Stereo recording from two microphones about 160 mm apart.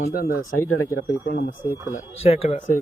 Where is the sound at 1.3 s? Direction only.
90° left.